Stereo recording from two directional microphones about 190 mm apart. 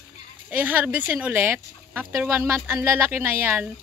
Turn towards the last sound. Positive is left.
turn(degrees=-10)  # may be behind; listen again after turning